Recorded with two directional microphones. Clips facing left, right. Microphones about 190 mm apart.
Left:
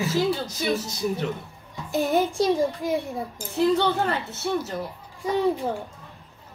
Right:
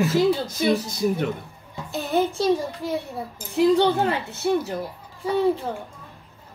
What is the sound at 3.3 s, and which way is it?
Speech, 15° right (ahead or behind).